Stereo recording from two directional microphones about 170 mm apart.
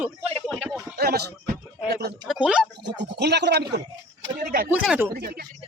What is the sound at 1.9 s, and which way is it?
Speech, 65° right (ahead or behind).